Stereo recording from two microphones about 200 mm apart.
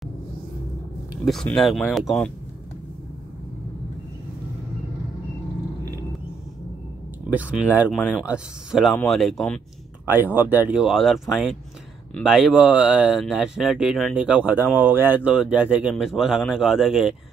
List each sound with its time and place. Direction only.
1.1 s speech: centre (ahead or behind)
7.2 s speech: 5° right (ahead or behind)
8.0 s speech: 5° left (ahead or behind)
10.0 s speech: 10° right (ahead or behind)